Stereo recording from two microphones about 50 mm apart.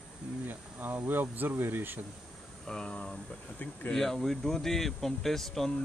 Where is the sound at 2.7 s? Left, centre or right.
Centre.